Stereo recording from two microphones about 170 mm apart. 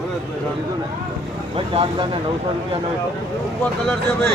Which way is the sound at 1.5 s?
30° right (ahead or behind).